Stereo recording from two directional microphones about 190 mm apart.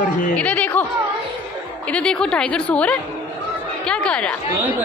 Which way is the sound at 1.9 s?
5° left (ahead or behind).